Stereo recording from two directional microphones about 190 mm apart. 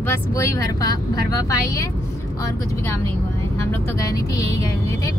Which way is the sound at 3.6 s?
15° left (ahead or behind).